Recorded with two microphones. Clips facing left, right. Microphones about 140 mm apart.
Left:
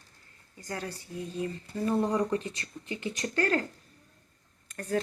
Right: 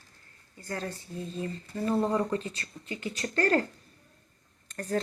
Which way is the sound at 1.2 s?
30° right (ahead or behind).